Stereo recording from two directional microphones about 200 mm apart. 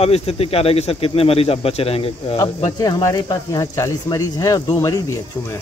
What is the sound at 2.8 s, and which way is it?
Speech, 15° left (ahead or behind).